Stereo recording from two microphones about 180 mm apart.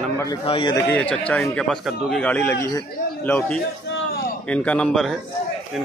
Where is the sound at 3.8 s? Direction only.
75° left (ahead or behind).